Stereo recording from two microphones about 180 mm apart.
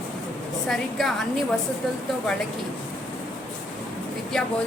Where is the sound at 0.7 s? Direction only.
Centre (ahead or behind).